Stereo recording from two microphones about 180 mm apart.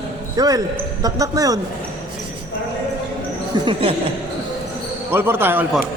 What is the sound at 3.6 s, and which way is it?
Speech, 30° right (ahead or behind).